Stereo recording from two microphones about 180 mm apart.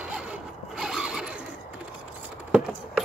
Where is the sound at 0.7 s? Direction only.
Centre (ahead or behind).